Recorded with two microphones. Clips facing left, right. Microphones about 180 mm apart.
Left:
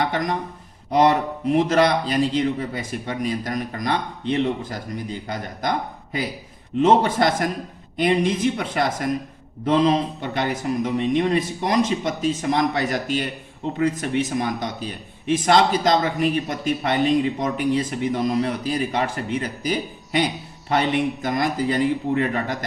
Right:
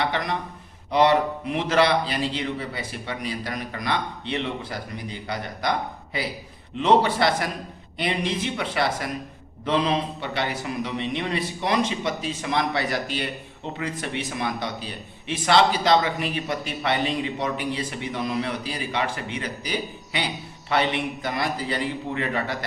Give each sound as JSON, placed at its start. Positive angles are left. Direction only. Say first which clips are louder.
{"t": 0.0, "sound": "a sound", "louder": "left 3 dB", "side_deg": 45}
{"t": 0.9, "sound": "a man's voice", "louder": "left 1 dB", "side_deg": 45}
{"t": 6.7, "sound": "a man's voice", "louder": "left 3 dB", "side_deg": 45}